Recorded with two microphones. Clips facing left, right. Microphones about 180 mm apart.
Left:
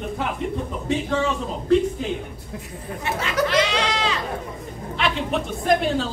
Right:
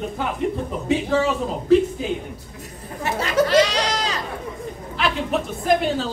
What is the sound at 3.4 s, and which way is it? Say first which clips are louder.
Goat: right 4 dB; 40° right (ahead or behind).